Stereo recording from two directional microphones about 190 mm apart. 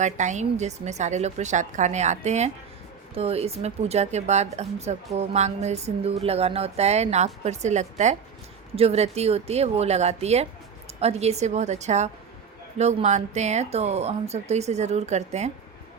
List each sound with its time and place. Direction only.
0.0 s speech: 40° right (ahead or behind)